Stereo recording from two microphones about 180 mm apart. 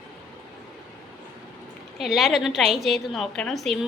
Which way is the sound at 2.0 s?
Centre (ahead or behind).